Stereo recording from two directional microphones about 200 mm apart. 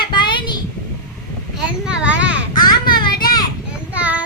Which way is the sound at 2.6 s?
20° left (ahead or behind).